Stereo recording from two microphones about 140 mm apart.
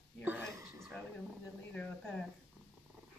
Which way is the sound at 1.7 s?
10° left (ahead or behind).